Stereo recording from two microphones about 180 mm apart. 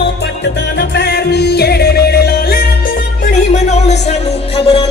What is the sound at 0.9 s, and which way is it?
Music, 65° left (ahead or behind).